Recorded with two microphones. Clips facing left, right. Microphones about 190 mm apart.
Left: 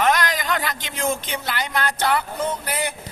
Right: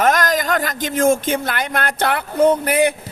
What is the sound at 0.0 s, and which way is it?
Speech, 45° right (ahead or behind).